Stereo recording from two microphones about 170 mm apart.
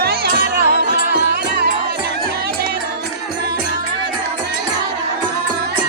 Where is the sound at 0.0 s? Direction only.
65° right (ahead or behind).